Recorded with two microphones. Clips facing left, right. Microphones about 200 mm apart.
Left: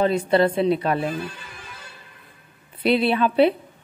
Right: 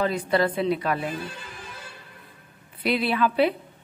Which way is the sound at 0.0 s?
25° left (ahead or behind).